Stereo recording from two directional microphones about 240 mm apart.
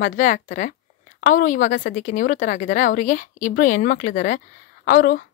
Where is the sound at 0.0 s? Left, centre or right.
Left.